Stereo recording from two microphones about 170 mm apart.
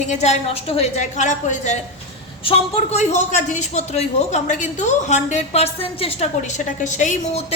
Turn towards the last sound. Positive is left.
turn(degrees=45)  # may be behind; listen again after turning